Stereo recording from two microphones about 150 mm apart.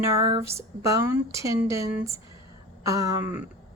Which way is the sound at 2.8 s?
20° right (ahead or behind).